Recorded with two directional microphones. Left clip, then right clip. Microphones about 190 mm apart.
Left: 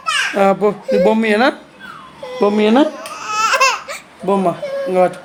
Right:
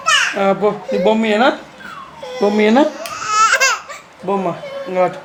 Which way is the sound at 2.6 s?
30° left (ahead or behind).